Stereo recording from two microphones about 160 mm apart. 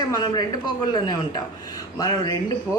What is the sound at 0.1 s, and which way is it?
Speech, 25° left (ahead or behind).